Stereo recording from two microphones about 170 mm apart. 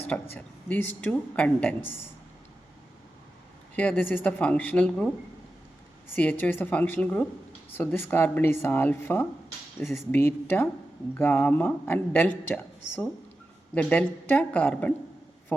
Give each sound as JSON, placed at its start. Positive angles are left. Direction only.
{"t": 0.3, "sound": "speech", "side_deg": 10}
{"t": 3.8, "sound": "speech", "side_deg": 10}
{"t": 6.1, "sound": "speech", "side_deg": 10}